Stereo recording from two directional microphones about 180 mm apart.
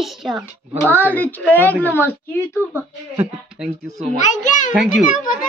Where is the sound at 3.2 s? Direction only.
5° right (ahead or behind).